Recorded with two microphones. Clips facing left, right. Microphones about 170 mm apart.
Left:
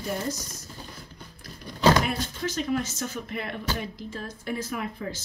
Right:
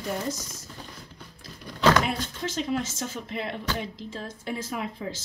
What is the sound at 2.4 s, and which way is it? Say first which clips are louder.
Speech: left 1 dB; 25° right (ahead or behind).